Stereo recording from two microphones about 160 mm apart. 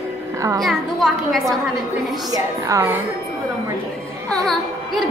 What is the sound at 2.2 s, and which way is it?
Speech, 20° right (ahead or behind).